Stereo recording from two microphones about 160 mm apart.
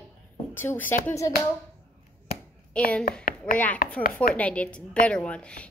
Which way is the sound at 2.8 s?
5° left (ahead or behind).